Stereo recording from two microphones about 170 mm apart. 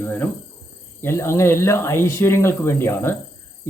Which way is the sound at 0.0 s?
10° left (ahead or behind).